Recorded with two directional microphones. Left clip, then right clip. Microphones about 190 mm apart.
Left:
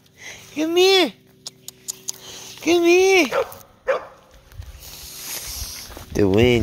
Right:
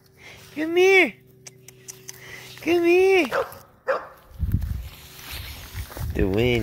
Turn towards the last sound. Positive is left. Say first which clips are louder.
# left 6 dB
turn(degrees=40)  # may be behind; listen again after turning